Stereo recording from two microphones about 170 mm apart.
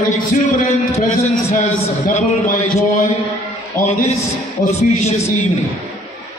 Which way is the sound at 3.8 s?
40° left (ahead or behind).